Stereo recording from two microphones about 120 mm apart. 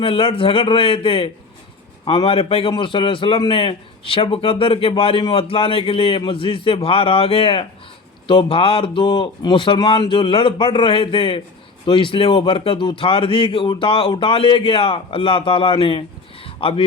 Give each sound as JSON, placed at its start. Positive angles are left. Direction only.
{"t": 0.0, "sound": "a man's voice", "side_deg": 50}